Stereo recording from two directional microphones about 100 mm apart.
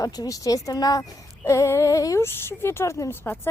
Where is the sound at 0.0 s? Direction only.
40° left (ahead or behind).